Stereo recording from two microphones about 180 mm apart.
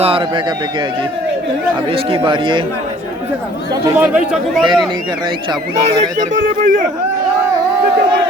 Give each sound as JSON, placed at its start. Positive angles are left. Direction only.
{"t": 0.0, "sound": "a man's voice", "side_deg": -30}
{"t": 1.9, "sound": "a man's voice", "side_deg": -30}
{"t": 3.9, "sound": "speech", "side_deg": -10}
{"t": 4.6, "sound": "a man's voice", "side_deg": -25}
{"t": 6.3, "sound": "a man's voice", "side_deg": -45}